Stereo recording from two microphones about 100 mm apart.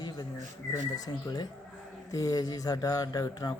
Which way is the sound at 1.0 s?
40° left (ahead or behind).